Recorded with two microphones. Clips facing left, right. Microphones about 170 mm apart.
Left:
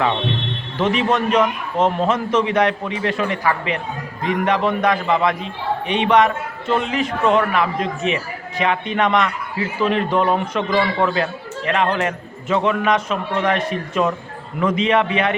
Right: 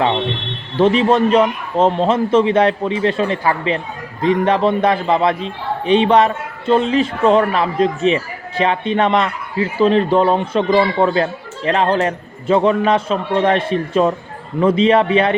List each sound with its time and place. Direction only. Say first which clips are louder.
0.8 s a man's voice: right 6 dB; 30° right (ahead or behind)